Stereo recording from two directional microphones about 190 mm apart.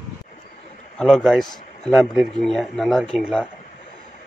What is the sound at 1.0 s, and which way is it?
A man's voice, centre (ahead or behind).